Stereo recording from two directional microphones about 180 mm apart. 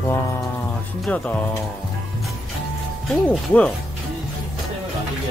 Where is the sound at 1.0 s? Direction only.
10° left (ahead or behind).